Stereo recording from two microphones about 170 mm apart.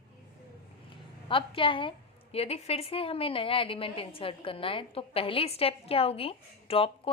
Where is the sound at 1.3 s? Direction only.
30° left (ahead or behind).